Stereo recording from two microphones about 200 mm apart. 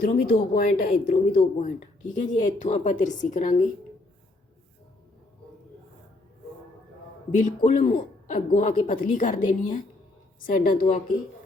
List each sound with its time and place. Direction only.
0.0 s speech: 45° left (ahead or behind)
7.4 s speech: 40° left (ahead or behind)